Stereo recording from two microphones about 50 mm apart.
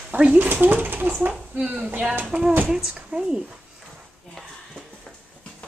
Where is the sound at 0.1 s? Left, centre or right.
Right; by 3.5 s centre.